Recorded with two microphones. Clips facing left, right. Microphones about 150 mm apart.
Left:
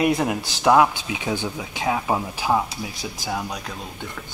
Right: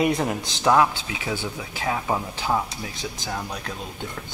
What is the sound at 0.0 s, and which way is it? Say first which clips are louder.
Speech: left 2 dB; 5° left (ahead or behind).